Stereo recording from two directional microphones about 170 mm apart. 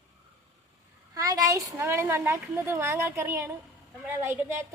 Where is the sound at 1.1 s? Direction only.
20° right (ahead or behind).